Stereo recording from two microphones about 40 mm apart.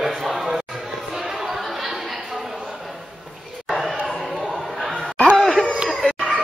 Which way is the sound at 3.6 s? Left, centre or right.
Centre.